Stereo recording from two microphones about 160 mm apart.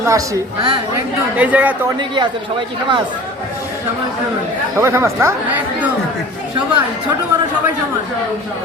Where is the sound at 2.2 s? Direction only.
30° right (ahead or behind).